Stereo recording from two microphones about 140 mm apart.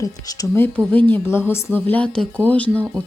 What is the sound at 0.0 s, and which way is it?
Speech, 25° left (ahead or behind).